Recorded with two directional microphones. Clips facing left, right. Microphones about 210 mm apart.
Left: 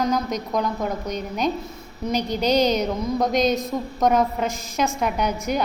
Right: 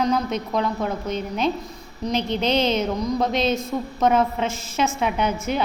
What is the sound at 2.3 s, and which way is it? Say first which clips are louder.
Speech: left 2 dB; 40° left (ahead or behind).